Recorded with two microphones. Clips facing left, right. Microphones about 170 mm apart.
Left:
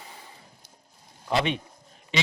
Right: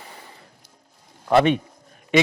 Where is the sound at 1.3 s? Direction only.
50° right (ahead or behind).